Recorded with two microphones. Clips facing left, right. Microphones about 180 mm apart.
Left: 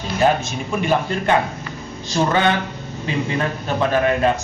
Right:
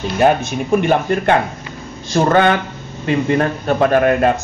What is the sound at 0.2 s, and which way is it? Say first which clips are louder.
A man's voice: right 4 dB; 60° right (ahead or behind).